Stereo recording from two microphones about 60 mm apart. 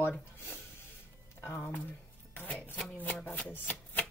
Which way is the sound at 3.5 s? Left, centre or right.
Left.